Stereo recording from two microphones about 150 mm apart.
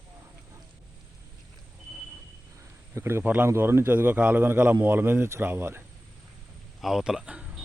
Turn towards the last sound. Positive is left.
turn(degrees=-5)  # may be behind; listen again after turning